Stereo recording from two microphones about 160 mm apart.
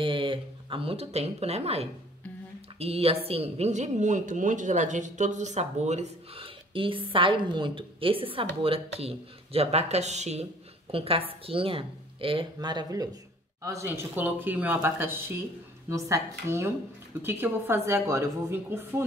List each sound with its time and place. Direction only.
0.0 s a woman's voice: 30° right (ahead or behind); by 19.0 s 15° right (ahead or behind)